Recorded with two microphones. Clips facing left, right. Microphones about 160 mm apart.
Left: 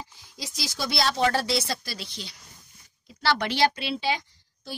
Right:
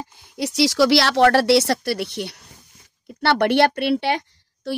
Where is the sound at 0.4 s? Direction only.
75° right (ahead or behind).